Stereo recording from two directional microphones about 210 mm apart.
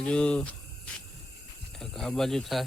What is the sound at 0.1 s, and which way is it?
Cricket, 5° left (ahead or behind).